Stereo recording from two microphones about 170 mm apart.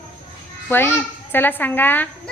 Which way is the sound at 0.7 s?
15° left (ahead or behind).